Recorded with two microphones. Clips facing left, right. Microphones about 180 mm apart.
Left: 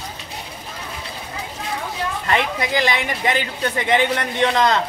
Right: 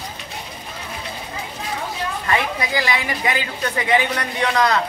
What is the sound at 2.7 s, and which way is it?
A man's voice, 25° left (ahead or behind).